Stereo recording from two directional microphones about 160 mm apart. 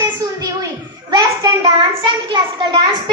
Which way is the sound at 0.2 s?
25° right (ahead or behind).